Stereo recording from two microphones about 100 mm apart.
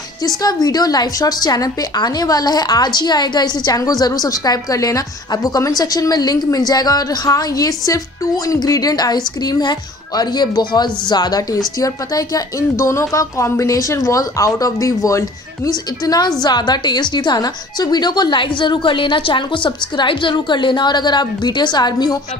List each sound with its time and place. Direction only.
0.2 s a woman's voice: 40° left (ahead or behind)